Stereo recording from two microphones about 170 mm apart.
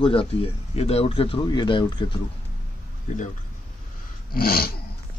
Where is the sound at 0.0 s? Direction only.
30° left (ahead or behind).